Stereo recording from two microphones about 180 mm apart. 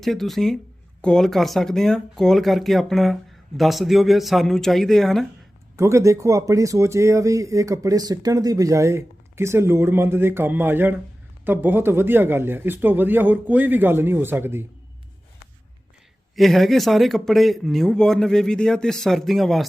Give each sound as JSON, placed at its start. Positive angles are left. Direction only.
{"t": 0.0, "sound": "speech", "side_deg": 0}
{"t": 5.7, "sound": "speech", "side_deg": -15}
{"t": 16.3, "sound": "speech", "side_deg": 0}